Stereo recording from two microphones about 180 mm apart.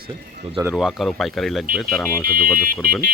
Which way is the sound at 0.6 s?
5° right (ahead or behind).